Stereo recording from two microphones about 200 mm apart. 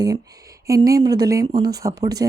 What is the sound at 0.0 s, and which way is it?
A woman's voice, 20° right (ahead or behind).